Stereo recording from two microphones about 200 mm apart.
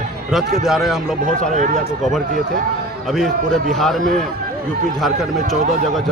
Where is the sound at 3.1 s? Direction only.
Centre (ahead or behind).